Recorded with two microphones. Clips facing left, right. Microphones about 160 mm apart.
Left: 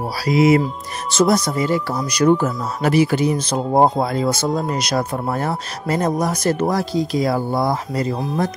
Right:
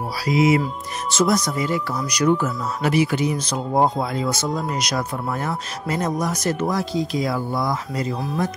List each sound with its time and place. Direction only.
0.2 s speech: 40° left (ahead or behind)